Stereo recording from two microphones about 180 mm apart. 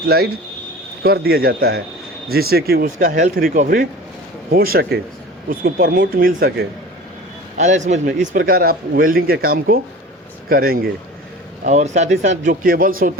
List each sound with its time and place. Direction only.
0.1 s speech: 55° right (ahead or behind)
7.5 s a man's voice: 40° right (ahead or behind)
11.6 s speech: 40° right (ahead or behind)
12.5 s speech: 50° right (ahead or behind)